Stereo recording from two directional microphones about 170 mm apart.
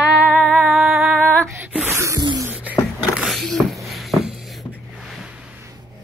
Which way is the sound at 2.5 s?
10° right (ahead or behind).